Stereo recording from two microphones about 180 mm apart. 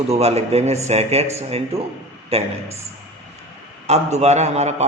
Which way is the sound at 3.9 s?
40° right (ahead or behind).